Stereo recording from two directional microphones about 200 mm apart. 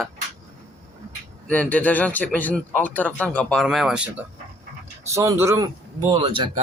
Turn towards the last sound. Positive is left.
turn(degrees=-25)  # may be behind; listen again after turning